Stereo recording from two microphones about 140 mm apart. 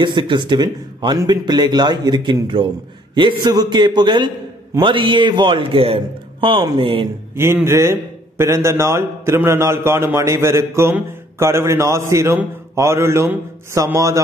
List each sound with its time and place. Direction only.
0.0 s speech: 35° right (ahead or behind)
7.3 s a man's voice: 15° right (ahead or behind)